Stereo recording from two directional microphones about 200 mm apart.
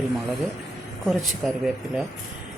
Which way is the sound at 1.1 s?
Centre (ahead or behind).